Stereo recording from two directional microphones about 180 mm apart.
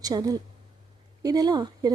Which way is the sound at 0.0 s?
20° right (ahead or behind).